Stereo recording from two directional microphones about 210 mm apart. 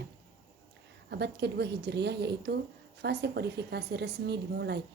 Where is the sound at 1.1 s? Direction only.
50° right (ahead or behind).